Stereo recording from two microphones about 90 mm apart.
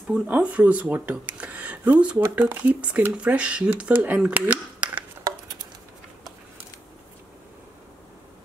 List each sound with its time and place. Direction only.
0.1 s speech: 15° right (ahead or behind)